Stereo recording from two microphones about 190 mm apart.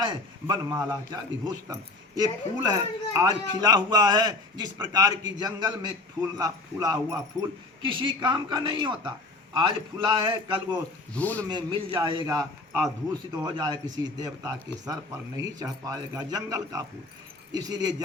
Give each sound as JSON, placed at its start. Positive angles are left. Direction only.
{"t": 0.0, "sound": "a man's voice", "side_deg": -25}
{"t": 11.1, "sound": "speech", "side_deg": 10}
{"t": 11.4, "sound": "a man's voice", "side_deg": -25}